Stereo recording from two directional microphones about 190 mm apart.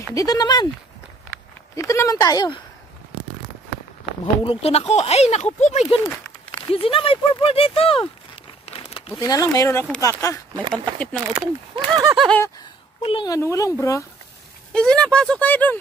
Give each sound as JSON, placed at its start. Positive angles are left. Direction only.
{"t": 0.1, "sound": "speech", "side_deg": 20}
{"t": 1.8, "sound": "speech", "side_deg": 15}
{"t": 4.5, "sound": "speech", "side_deg": 30}
{"t": 8.6, "sound": "a sound", "side_deg": 30}
{"t": 9.1, "sound": "speech", "side_deg": 20}
{"t": 11.3, "sound": "speech", "side_deg": -20}
{"t": 12.2, "sound": "speech", "side_deg": 5}
{"t": 13.0, "sound": "speech", "side_deg": 25}
{"t": 14.7, "sound": "speech", "side_deg": 5}